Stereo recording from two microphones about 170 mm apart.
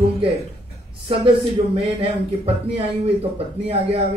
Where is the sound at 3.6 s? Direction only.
35° right (ahead or behind).